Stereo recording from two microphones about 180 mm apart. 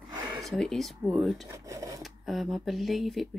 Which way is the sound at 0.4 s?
Centre (ahead or behind).